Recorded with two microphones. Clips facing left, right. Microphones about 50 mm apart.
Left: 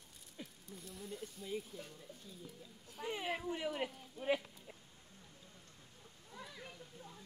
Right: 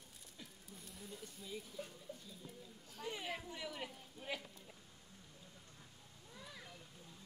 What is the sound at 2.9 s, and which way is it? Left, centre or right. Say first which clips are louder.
Speech: left 4 dB; centre.